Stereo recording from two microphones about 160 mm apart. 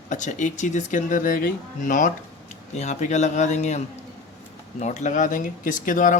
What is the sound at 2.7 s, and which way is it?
Speech, 45° left (ahead or behind).